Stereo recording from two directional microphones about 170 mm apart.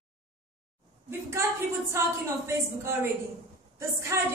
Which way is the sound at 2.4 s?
15° right (ahead or behind).